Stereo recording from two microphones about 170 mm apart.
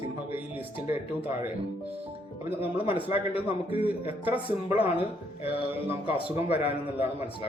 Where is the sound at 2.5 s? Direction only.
35° left (ahead or behind).